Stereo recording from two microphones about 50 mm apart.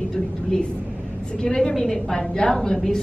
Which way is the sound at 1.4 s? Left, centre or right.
Centre.